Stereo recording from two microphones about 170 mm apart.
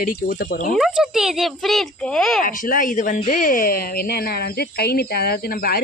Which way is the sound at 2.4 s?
55° left (ahead or behind).